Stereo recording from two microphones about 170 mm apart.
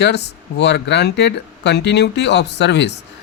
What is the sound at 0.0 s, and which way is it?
Speech, 80° left.